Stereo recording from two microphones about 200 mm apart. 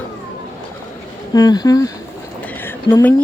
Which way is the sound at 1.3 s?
20° left (ahead or behind).